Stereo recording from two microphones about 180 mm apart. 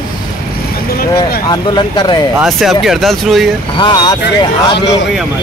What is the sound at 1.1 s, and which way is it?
Speech, 25° left (ahead or behind).